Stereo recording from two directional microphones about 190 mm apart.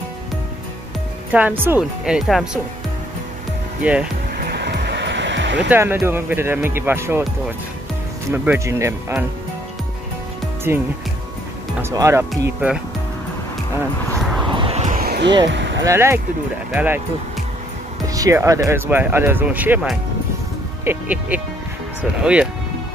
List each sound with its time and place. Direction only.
1.3 s a woman's voice: 10° right (ahead or behind)
3.8 s speech: 5° right (ahead or behind)
4.4 s music: 55° right (ahead or behind)
5.7 s speech: 10° right (ahead or behind)
8.3 s speech: 15° right (ahead or behind)
10.7 s a woman's voice: 15° right (ahead or behind)
14.5 s vehicle: 30° right (ahead or behind); by 15.3 s 55° right (ahead or behind)
15.4 s a sound: 70° right (ahead or behind)
15.8 s speech: 15° right (ahead or behind)
18.0 s a woman's voice: 20° right (ahead or behind)